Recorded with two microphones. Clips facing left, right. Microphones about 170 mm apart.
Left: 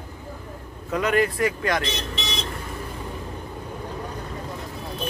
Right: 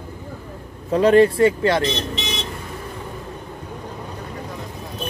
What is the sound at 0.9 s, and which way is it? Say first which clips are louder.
Speech: right 9 dB; 30° right (ahead or behind).